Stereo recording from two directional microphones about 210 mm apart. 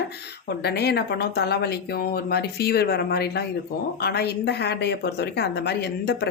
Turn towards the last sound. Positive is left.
turn(degrees=50)  # may be behind; listen again after turning